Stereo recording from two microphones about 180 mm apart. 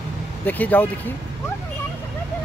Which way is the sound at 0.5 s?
10° left (ahead or behind).